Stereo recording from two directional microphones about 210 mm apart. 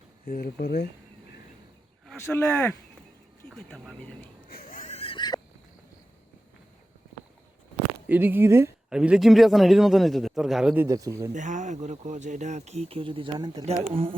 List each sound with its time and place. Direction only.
0.3 s speech: 45° left (ahead or behind)
2.2 s speech: 10° left (ahead or behind)
4.4 s a sound: 45° left (ahead or behind); by 5.4 s 20° left (ahead or behind)
8.0 s speech: 10° right (ahead or behind)
10.8 s speech: 15° right (ahead or behind)
11.3 s speech: 35° right (ahead or behind)